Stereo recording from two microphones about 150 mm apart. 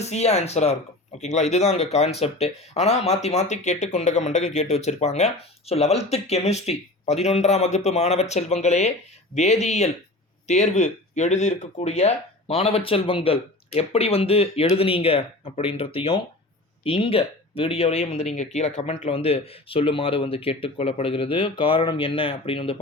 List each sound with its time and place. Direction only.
0.0 s speech: 45° left (ahead or behind)